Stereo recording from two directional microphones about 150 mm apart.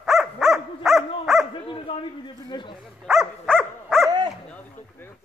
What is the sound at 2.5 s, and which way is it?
Dog, 30° left (ahead or behind).